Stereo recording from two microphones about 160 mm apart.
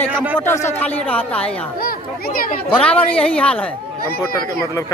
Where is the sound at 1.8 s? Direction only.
65° left (ahead or behind).